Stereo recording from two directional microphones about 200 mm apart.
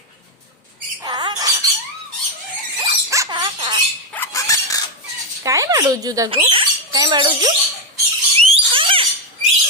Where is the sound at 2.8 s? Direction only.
15° right (ahead or behind).